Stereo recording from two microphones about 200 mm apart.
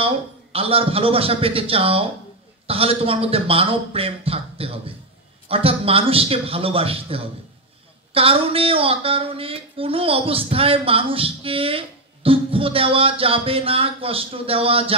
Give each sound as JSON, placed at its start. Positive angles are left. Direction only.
{"t": 0.0, "sound": "a man's voice", "side_deg": -30}